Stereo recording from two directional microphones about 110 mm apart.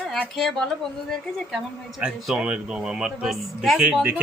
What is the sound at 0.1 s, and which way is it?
Speech, centre (ahead or behind).